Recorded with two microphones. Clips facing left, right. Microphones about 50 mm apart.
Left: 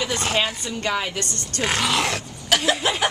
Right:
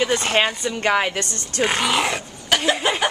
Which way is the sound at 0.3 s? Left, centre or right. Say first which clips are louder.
Right 4 dB; right.